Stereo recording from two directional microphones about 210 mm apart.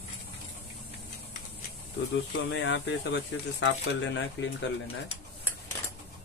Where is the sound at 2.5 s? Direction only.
60° left (ahead or behind).